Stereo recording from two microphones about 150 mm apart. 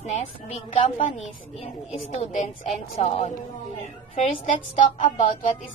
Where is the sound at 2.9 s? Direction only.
50° left (ahead or behind).